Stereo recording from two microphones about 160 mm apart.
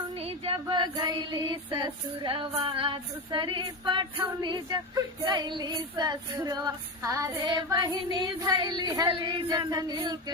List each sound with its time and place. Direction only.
0.2 s female singing: 40° right (ahead or behind)